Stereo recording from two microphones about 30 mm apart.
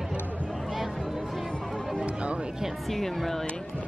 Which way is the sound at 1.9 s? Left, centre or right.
Right.